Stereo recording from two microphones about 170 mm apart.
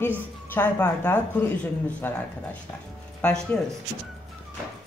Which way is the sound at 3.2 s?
5° left (ahead or behind).